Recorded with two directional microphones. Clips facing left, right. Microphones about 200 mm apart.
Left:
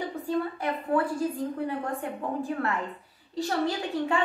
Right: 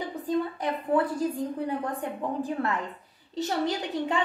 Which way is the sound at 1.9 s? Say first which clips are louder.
Even; 15° right (ahead or behind).